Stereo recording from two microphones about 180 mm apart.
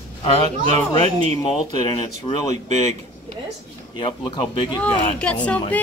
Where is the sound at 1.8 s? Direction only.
25° left (ahead or behind).